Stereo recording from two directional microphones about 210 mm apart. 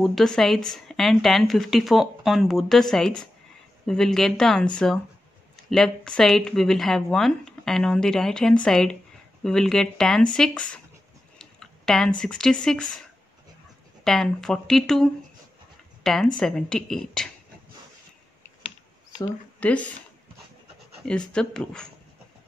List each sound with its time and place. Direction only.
0.0 s speech: centre (ahead or behind)
14.0 s speech: centre (ahead or behind)
19.6 s speech: 5° left (ahead or behind)
21.0 s speech: 5° left (ahead or behind)